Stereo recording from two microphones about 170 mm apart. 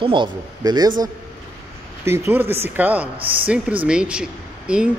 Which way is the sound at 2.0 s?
15° right (ahead or behind).